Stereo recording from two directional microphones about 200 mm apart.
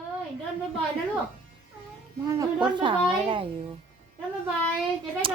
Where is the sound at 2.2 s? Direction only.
15° right (ahead or behind).